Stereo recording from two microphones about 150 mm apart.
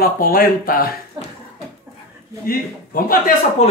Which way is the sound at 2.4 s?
70° left (ahead or behind).